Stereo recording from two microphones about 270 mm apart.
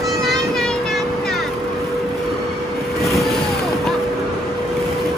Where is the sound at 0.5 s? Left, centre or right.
Centre.